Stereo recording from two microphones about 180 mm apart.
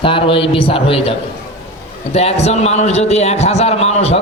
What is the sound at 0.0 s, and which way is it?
A man's voice, 30° left (ahead or behind).